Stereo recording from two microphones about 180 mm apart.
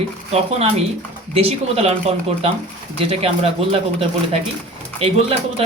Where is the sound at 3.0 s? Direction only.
35° right (ahead or behind).